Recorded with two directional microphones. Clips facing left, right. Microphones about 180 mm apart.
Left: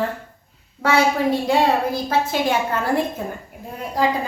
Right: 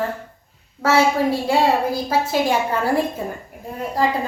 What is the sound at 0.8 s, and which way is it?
A woman's voice, 5° right (ahead or behind).